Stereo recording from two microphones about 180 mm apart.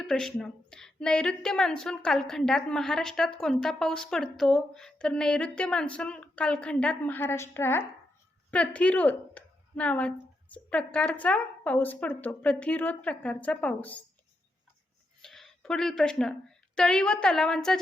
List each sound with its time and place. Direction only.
0.0 s a woman's voice: centre (ahead or behind)
15.2 s a woman's voice: centre (ahead or behind)